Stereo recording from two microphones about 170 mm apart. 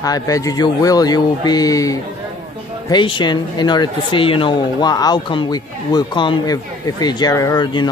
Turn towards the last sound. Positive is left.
turn(degrees=25)  # may be behind; listen again after turning